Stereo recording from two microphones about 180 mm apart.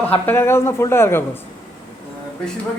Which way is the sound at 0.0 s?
10° left (ahead or behind).